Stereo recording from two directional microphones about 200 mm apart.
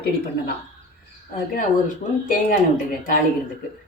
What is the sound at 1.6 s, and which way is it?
Speech, 40° left (ahead or behind).